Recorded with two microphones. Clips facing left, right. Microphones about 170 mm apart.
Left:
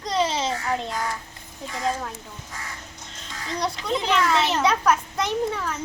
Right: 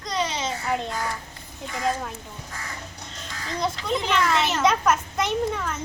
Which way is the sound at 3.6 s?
Centre (ahead or behind).